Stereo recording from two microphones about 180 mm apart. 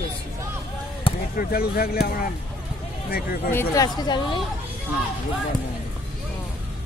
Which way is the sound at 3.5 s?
20° left (ahead or behind).